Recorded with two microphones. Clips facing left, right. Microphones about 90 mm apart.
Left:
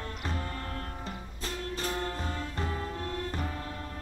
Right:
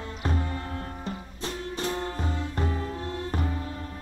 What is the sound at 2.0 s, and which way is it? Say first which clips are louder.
Music: right 3 dB; 20° right (ahead or behind).